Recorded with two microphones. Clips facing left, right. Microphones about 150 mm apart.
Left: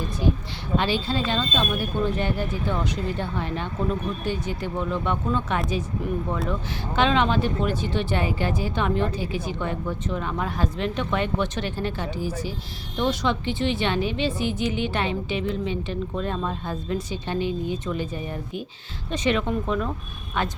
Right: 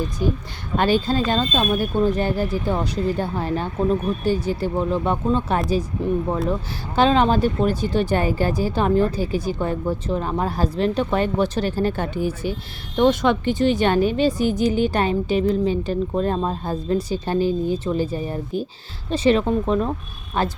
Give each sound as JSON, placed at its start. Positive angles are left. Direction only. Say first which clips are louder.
{"t": 0.8, "sound": "speech", "louder": "right 6 dB", "side_deg": -45}